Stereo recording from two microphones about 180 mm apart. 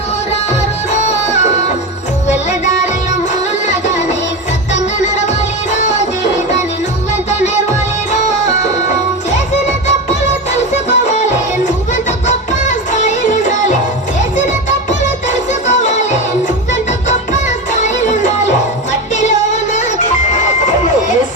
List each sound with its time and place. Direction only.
0.9 s music: 40° left (ahead or behind)
5.7 s music: 40° left (ahead or behind)
7.3 s music: 40° left (ahead or behind)
10.1 s music: 40° left (ahead or behind)
12.6 s music: 45° left (ahead or behind)
17.7 s music: 45° left (ahead or behind)